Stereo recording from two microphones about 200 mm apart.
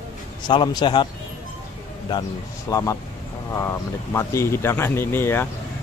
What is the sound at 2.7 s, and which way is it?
Speech, 15° left (ahead or behind).